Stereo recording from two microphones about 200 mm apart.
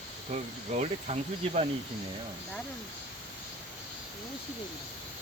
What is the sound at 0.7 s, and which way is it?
Speech, 35° right (ahead or behind).